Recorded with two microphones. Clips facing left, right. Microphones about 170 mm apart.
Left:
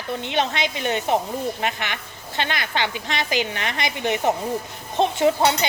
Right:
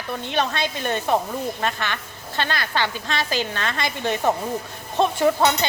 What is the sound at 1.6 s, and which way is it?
A woman's voice, 15° left (ahead or behind).